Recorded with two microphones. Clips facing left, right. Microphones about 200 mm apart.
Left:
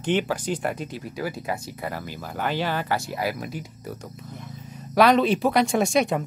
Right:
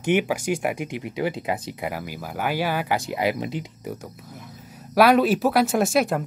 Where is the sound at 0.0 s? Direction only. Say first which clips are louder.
Right 2 dB; 10° right (ahead or behind).